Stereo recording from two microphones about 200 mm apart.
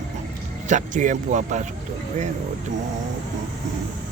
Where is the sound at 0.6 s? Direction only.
40° right (ahead or behind).